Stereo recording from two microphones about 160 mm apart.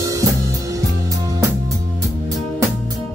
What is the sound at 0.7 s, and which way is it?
Music, 20° right (ahead or behind).